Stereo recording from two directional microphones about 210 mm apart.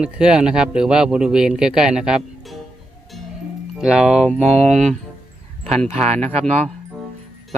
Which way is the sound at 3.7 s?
5° right (ahead or behind).